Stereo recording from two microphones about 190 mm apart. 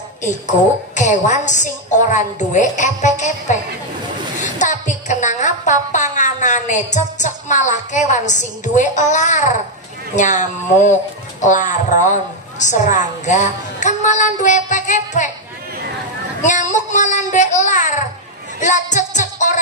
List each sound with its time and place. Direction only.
0.2 s a woman's voice: 40° left (ahead or behind)
16.4 s a woman's voice: 40° left (ahead or behind)
18.6 s music: 40° left (ahead or behind)